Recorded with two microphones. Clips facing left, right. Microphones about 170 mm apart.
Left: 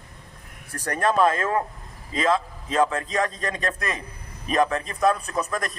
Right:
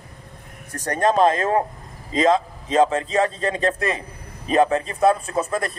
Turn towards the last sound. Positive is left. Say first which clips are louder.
# right 4 dB
turn(degrees=-25)  # may be behind; listen again after turning